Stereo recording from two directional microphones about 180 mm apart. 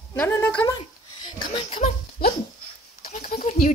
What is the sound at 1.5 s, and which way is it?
Speech, 30° left (ahead or behind).